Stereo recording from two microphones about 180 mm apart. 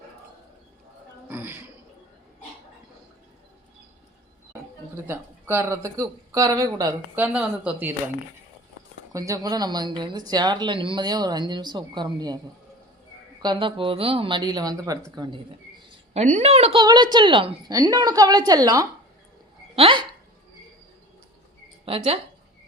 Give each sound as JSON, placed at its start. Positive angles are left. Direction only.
{"t": 1.3, "sound": "a sound", "side_deg": -10}
{"t": 5.0, "sound": "speech", "side_deg": -15}
{"t": 7.2, "sound": "speech", "side_deg": -5}
{"t": 9.1, "sound": "speech", "side_deg": -15}
{"t": 13.4, "sound": "speech", "side_deg": -25}
{"t": 15.9, "sound": "a woman's voice", "side_deg": -40}
{"t": 16.8, "sound": "speech", "side_deg": -25}
{"t": 21.8, "sound": "a woman's voice", "side_deg": -30}